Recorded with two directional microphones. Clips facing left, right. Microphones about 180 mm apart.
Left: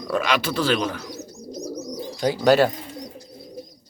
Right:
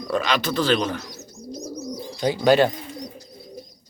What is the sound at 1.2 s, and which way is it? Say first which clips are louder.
Bird: left 2 dB; 35° left (ahead or behind).